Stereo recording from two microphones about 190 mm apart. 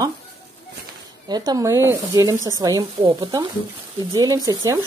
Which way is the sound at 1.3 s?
20° right (ahead or behind).